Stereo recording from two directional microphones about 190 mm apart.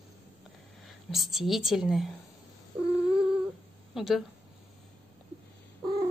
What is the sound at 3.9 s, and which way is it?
Speech, centre (ahead or behind).